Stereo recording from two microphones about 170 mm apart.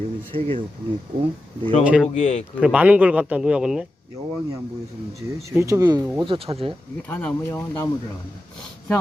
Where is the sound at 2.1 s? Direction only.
45° left (ahead or behind).